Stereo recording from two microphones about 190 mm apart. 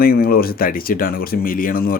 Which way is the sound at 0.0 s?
50° left (ahead or behind).